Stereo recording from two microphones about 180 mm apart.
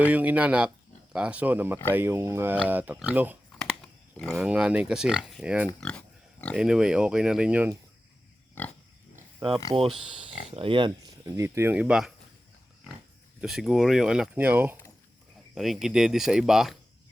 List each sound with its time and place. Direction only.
0.0 s speech: 10° right (ahead or behind)
4.2 s speech: centre (ahead or behind)
5.8 s pig: 5° left (ahead or behind)
6.6 s speech: 5° right (ahead or behind)
8.6 s pig: 10° left (ahead or behind)
10.5 s speech: 30° right (ahead or behind); by 12.1 s 5° right (ahead or behind)
13.4 s speech: centre (ahead or behind)
15.5 s speech: centre (ahead or behind)